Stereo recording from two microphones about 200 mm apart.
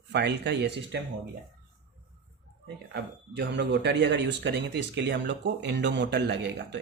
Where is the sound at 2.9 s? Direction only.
60° right (ahead or behind).